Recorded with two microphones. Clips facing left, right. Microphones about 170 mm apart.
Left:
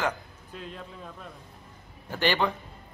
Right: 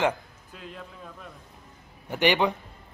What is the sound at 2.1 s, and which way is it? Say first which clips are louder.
Speech: right 3 dB; 20° right (ahead or behind).